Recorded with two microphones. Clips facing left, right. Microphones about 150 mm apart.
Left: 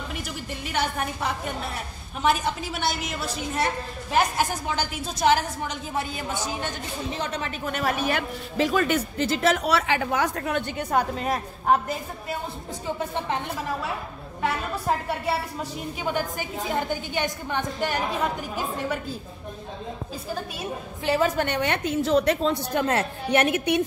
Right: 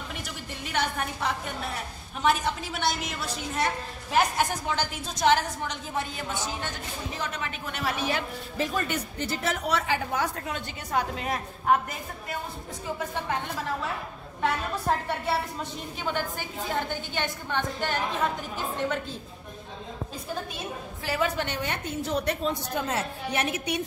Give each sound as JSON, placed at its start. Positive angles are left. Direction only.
{"t": 0.7, "sound": "a woman's voice", "side_deg": 5}
{"t": 7.2, "sound": "speech", "side_deg": 35}
{"t": 7.6, "sound": "a man's voice", "side_deg": 50}
{"t": 14.4, "sound": "a woman's voice", "side_deg": 5}
{"t": 21.1, "sound": "a woman's voice", "side_deg": 25}
{"t": 21.5, "sound": "a man's voice", "side_deg": 80}